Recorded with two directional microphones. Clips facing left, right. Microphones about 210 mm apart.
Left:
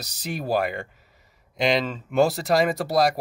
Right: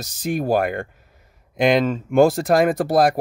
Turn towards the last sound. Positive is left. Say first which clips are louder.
# right 4 dB
turn(degrees=-50)  # may be behind; listen again after turning